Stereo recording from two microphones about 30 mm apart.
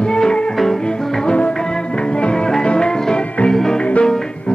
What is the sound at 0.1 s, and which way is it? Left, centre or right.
Music, left.